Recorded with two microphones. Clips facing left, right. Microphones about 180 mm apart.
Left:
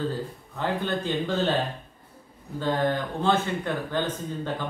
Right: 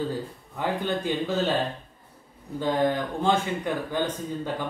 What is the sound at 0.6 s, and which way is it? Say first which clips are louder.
Speech: even; 10° right (ahead or behind).